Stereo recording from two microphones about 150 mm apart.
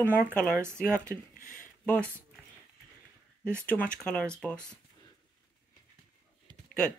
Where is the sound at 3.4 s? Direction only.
10° left (ahead or behind).